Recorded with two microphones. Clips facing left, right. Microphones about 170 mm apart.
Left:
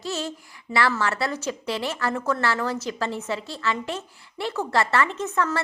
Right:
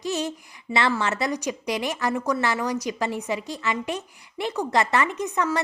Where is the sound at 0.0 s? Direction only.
15° right (ahead or behind).